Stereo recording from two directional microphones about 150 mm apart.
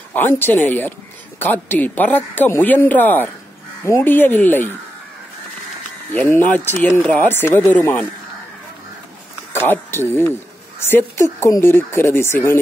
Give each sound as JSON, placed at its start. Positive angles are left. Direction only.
{"t": 0.1, "sound": "speech", "side_deg": 15}
{"t": 6.1, "sound": "speech", "side_deg": 15}
{"t": 9.5, "sound": "speech", "side_deg": 15}